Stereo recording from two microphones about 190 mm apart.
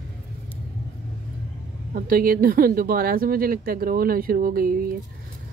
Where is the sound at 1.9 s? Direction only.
50° right (ahead or behind).